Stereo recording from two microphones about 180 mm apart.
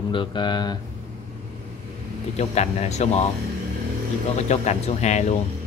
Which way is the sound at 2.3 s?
35° left (ahead or behind).